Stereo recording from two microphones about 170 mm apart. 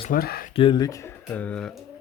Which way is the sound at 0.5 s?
30° left (ahead or behind).